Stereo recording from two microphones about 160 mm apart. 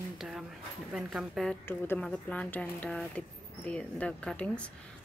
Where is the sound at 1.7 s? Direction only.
10° left (ahead or behind).